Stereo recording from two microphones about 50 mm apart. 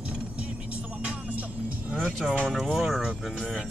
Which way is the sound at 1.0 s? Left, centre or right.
Right.